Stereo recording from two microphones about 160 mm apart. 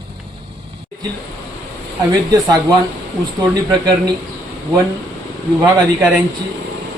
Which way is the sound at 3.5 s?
25° right (ahead or behind).